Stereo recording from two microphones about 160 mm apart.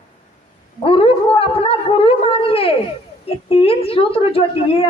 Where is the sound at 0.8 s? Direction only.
35° left (ahead or behind).